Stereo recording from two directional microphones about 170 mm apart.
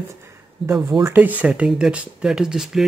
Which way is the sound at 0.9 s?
15° right (ahead or behind).